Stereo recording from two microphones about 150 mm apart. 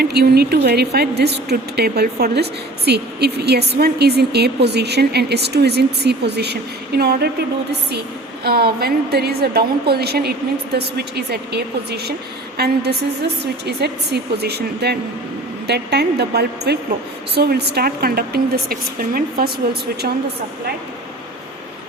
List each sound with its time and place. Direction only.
0.0 s a woman's voice: 90° right
8.4 s a woman's voice: 90° right